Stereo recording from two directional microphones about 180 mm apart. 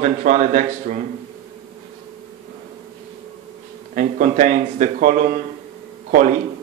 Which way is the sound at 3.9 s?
45° right (ahead or behind).